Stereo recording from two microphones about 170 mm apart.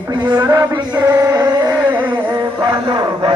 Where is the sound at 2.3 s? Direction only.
30° right (ahead or behind).